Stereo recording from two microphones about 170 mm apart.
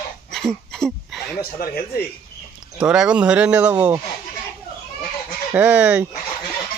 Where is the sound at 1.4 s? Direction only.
65° left (ahead or behind).